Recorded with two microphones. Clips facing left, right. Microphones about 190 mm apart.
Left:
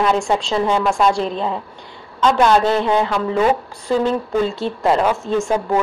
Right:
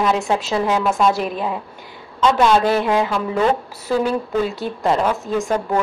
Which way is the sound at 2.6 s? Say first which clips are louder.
Even; 20° left (ahead or behind).